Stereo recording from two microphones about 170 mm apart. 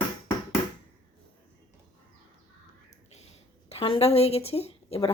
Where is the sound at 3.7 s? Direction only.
35° left (ahead or behind).